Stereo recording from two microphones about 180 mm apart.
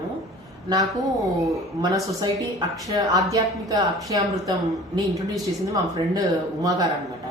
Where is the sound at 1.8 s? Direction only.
20° right (ahead or behind).